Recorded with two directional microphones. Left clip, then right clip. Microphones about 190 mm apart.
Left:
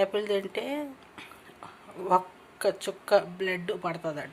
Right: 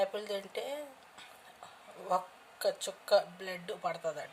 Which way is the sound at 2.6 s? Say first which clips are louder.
Left 5 dB; 5° right (ahead or behind).